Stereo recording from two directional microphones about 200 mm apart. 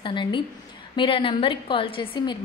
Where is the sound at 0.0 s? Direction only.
25° left (ahead or behind).